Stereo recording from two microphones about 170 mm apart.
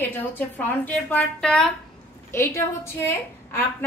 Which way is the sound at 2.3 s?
15° left (ahead or behind).